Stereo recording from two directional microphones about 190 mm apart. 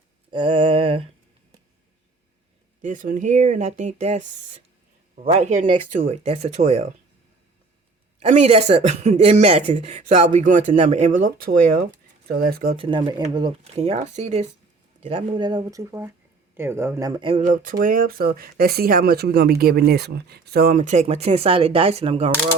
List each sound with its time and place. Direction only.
0.3 s mantra: 30° right (ahead or behind)
2.8 s speech: 45° right (ahead or behind)
8.2 s speech: 35° right (ahead or behind); by 12.7 s 50° right (ahead or behind)
12.7 s speech: 25° right (ahead or behind)